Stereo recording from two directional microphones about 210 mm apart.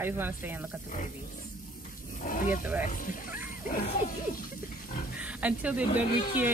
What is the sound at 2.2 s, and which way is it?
Speech, 40° left (ahead or behind).